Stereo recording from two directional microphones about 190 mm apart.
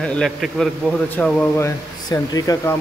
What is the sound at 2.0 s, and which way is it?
Speech, 20° left (ahead or behind).